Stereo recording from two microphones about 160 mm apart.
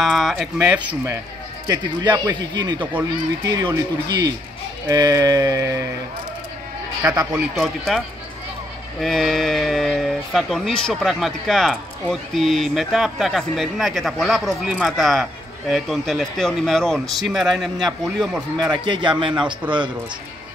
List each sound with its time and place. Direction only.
0.0 s speech: centre (ahead or behind)
2.5 s music: 25° right (ahead or behind)
7.3 s speech: centre (ahead or behind)
9.0 s speech: centre (ahead or behind)
18.7 s music: 30° right (ahead or behind)
19.6 s speech: 10° right (ahead or behind)